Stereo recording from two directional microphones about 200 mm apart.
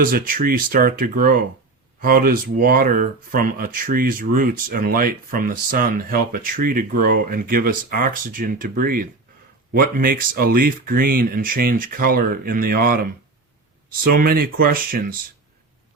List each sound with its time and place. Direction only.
0.0 s speech: 45° right (ahead or behind)